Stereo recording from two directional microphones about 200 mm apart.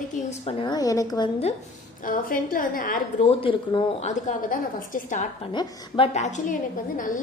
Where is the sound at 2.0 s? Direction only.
45° left (ahead or behind); by 4.1 s 25° left (ahead or behind).